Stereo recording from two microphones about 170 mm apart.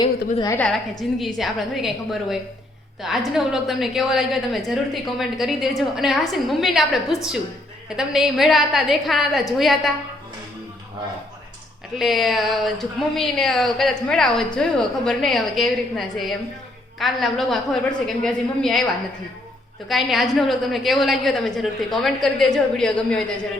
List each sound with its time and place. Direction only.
0.0 s a woman's voice: 20° left (ahead or behind)
1.0 s a woman's voice: centre (ahead or behind)
11.9 s a woman's voice: centre (ahead or behind)
19.9 s a woman's voice: centre (ahead or behind)